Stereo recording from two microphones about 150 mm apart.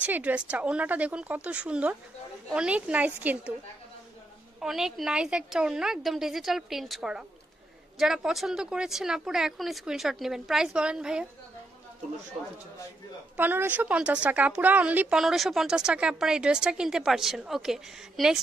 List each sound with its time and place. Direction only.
0.0 s speech: 10° right (ahead or behind)
4.6 s speech: 5° right (ahead or behind)
13.4 s speech: 15° right (ahead or behind)